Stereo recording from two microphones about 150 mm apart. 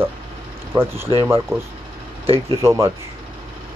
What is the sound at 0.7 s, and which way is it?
Speech, 30° right (ahead or behind).